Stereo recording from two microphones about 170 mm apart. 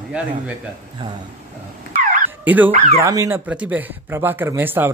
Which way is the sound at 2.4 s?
10° right (ahead or behind).